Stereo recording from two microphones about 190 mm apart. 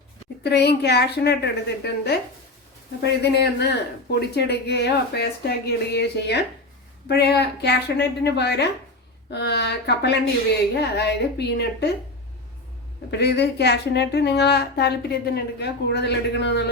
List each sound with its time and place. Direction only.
0.4 s a woman's voice: 60° left (ahead or behind)
13.1 s a woman's voice: 60° left (ahead or behind)